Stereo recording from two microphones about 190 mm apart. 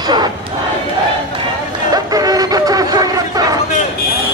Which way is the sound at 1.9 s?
20° right (ahead or behind).